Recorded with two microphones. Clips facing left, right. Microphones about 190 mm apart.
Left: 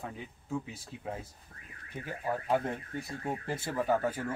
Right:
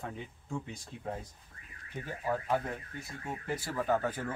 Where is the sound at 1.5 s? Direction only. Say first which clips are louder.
Left 3 dB; 55° left (ahead or behind).